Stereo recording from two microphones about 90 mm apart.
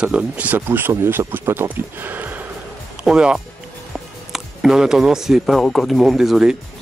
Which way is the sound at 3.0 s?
10° right (ahead or behind).